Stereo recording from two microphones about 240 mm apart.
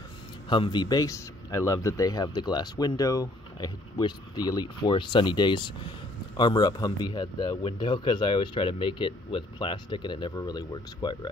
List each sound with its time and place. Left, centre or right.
0.5 s a man's voice: centre